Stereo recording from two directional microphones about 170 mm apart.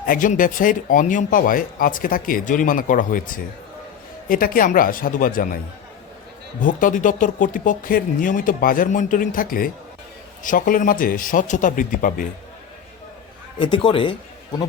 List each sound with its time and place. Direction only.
0.0 s speech: 55° left (ahead or behind)
6.6 s speech: 50° left (ahead or behind)
13.6 s a man's voice: 30° left (ahead or behind)